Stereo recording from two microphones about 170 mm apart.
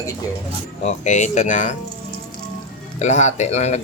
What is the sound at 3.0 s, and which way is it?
Speech, 45° left (ahead or behind).